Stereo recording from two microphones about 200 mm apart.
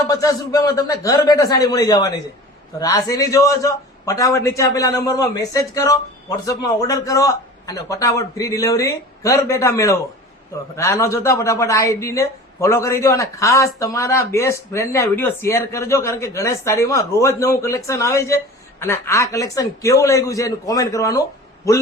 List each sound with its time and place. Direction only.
0.1 s speech: 15° left (ahead or behind)